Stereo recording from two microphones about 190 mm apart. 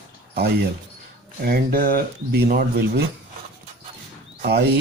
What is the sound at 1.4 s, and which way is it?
Speech, 50° right (ahead or behind).